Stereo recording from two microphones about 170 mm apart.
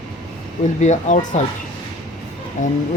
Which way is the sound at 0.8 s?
45° left (ahead or behind).